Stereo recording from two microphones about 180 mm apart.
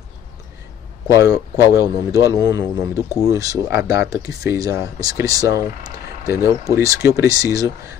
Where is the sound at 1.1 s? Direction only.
20° right (ahead or behind).